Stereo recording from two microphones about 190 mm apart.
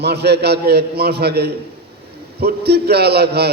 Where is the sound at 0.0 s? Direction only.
60° right (ahead or behind).